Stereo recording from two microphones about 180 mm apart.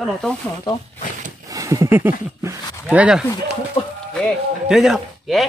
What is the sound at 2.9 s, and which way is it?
Speech, 5° right (ahead or behind).